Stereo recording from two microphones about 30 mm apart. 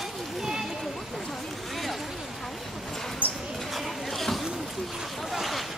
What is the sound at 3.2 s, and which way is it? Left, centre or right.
Mouse, right.